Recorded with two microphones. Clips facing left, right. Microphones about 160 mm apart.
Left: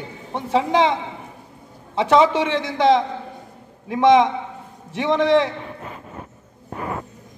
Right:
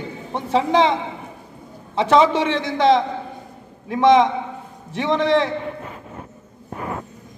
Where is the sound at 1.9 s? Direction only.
10° left (ahead or behind).